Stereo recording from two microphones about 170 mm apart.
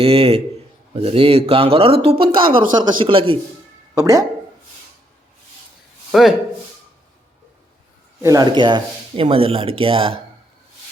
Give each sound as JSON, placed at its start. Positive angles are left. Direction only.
{"t": 0.0, "sound": "speech", "side_deg": -35}
{"t": 3.9, "sound": "speech", "side_deg": -20}
{"t": 6.1, "sound": "speech", "side_deg": 0}
{"t": 8.2, "sound": "speech", "side_deg": -20}